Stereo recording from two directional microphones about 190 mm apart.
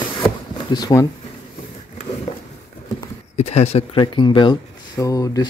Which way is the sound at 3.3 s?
35° left (ahead or behind).